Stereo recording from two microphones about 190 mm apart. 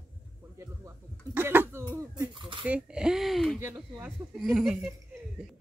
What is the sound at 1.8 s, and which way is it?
Speech, 20° right (ahead or behind).